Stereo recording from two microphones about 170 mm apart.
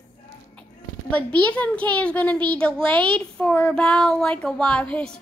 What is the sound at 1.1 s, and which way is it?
A woman's voice, 10° left (ahead or behind).